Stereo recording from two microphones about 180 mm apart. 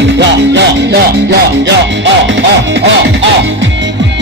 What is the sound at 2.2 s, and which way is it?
Music, 90° right.